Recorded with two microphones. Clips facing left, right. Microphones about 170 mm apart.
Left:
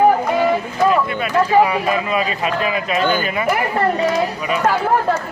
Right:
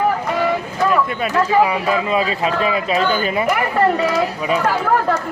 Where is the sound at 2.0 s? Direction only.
25° right (ahead or behind).